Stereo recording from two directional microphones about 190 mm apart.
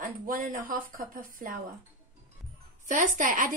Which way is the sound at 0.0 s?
45° right (ahead or behind).